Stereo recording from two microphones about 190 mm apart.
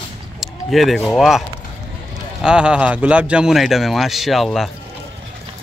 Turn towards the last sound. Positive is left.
turn(degrees=0)  # may be behind; listen again after turning